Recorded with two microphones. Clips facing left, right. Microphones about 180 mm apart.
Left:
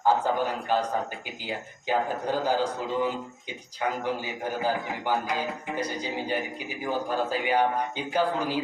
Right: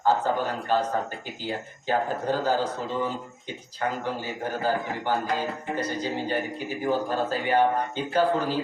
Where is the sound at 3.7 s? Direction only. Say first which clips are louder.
Even; 15° left (ahead or behind).